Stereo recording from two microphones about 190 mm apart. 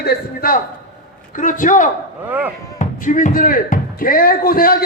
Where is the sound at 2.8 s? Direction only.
45° left (ahead or behind).